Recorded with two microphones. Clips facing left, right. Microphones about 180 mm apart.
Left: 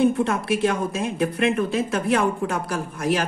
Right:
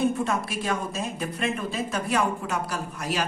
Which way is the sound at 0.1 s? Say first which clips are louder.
Left 5 dB; 60° left (ahead or behind).